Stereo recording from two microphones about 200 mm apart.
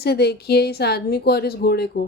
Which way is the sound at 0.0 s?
55° left (ahead or behind).